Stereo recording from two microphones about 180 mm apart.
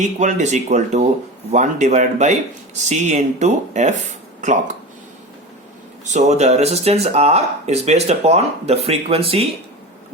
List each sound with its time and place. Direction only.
0.0 s speech: 40° right (ahead or behind)
6.1 s speech: 40° right (ahead or behind)